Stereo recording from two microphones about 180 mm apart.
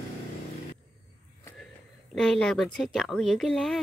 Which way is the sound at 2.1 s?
5° left (ahead or behind).